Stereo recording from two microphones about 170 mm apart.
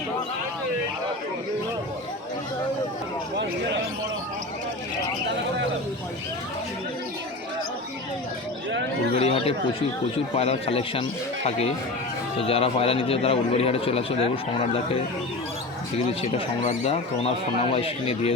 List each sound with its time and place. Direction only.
9.1 s a man's voice: 35° left (ahead or behind)
12.4 s a man's voice: 35° left (ahead or behind)
16.2 s a man's voice: 40° left (ahead or behind)